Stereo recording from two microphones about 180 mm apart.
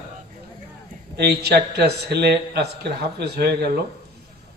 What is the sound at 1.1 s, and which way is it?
A man's voice, 65° right (ahead or behind).